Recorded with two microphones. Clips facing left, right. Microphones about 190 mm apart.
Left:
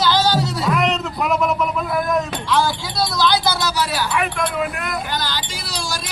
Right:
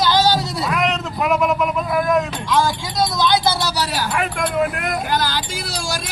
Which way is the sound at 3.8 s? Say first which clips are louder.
Left 1 dB; 40° right (ahead or behind).